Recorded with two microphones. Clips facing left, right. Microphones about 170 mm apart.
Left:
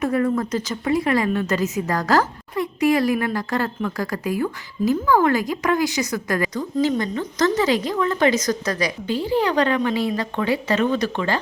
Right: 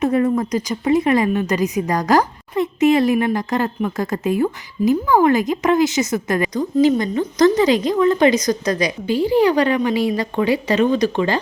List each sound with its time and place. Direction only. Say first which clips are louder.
0.0 s a woman's voice: right 3 dB; 20° right (ahead or behind)